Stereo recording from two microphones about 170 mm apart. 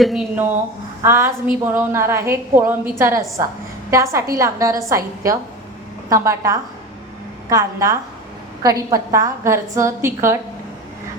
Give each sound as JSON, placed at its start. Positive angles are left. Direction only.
{"t": 0.0, "sound": "a woman's voice", "side_deg": 0}
{"t": 1.0, "sound": "a woman's voice", "side_deg": -15}